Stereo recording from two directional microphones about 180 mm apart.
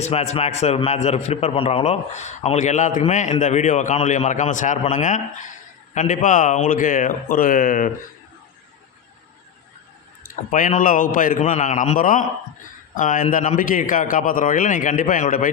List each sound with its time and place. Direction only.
0.0 s a man's voice: 35° left (ahead or behind)
10.5 s a man's voice: 45° left (ahead or behind)